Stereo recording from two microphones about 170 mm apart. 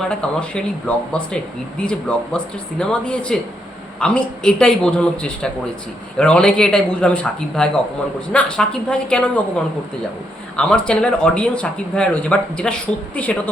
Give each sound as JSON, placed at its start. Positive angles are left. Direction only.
{"t": 0.0, "sound": "speech", "side_deg": 5}
{"t": 10.6, "sound": "speech", "side_deg": 5}